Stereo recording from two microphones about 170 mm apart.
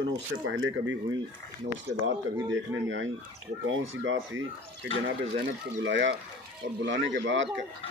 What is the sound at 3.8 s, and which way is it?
Speech, 90° right.